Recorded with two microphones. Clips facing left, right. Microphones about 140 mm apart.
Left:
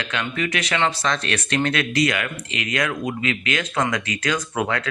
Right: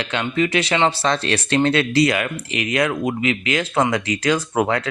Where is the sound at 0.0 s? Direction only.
30° right (ahead or behind).